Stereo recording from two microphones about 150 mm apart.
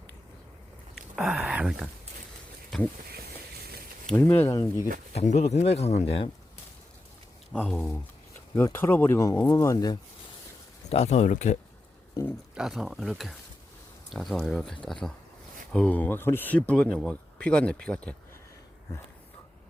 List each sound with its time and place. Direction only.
0.9 s a sound: centre (ahead or behind)
2.7 s speech: centre (ahead or behind)
4.1 s speech: 15° left (ahead or behind)
5.1 s speech: 50° left (ahead or behind)
8.5 s speech: 15° left (ahead or behind)
10.8 s speech: 45° left (ahead or behind)
12.2 s speech: 25° left (ahead or behind)
12.5 s speech: centre (ahead or behind)